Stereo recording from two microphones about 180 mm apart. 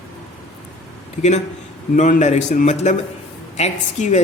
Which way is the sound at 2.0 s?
40° left (ahead or behind).